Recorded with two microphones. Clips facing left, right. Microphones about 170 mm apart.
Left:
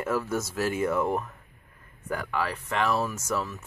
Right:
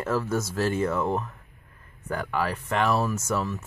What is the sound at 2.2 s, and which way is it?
Speech, centre (ahead or behind).